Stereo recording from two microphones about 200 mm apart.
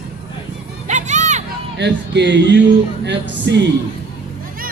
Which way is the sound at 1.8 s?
60° right (ahead or behind).